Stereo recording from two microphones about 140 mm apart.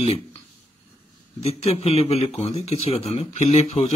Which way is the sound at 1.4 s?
50° left (ahead or behind).